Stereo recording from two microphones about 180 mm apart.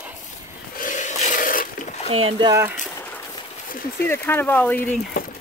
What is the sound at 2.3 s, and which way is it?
Speech, 20° right (ahead or behind).